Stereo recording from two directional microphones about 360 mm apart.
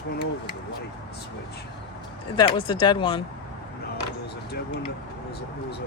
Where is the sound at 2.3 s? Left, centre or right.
Centre.